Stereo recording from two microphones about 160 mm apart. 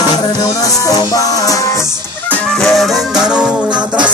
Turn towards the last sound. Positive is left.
turn(degrees=-5)  # may be behind; listen again after turning